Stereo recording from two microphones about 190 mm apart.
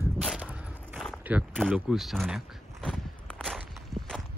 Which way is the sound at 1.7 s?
Centre (ahead or behind).